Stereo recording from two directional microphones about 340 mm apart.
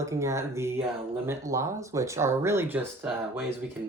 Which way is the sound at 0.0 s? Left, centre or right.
Centre.